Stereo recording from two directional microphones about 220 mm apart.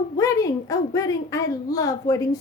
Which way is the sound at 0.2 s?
15° left (ahead or behind).